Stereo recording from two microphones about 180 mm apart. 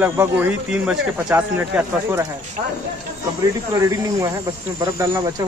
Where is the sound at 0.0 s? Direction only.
10° right (ahead or behind).